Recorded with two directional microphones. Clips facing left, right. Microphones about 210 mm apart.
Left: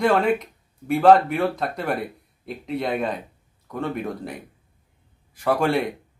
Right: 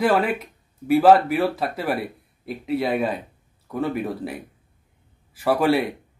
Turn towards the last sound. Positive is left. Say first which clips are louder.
# right 2 dB
turn(degrees=-5)  # may be behind; listen again after turning